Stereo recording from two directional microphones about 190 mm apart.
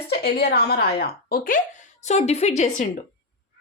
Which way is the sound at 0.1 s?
55° left (ahead or behind).